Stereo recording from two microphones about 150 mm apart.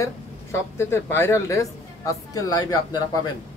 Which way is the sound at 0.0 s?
20° left (ahead or behind).